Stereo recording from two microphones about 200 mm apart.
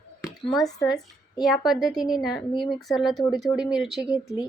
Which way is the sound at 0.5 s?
Centre (ahead or behind).